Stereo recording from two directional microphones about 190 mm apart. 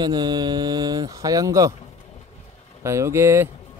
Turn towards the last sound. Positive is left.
turn(degrees=-15)  # may be behind; listen again after turning